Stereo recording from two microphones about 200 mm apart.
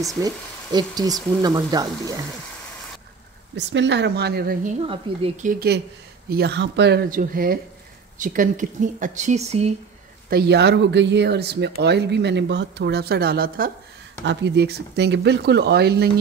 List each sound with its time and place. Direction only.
0.2 s speech: 20° right (ahead or behind)
3.5 s speech: 60° right (ahead or behind)
4.8 s speech: 30° right (ahead or behind)
5.5 s speech: 50° right (ahead or behind); by 9.7 s 30° right (ahead or behind)
10.3 s speech: 55° right (ahead or behind)
14.2 s speech: 60° right (ahead or behind)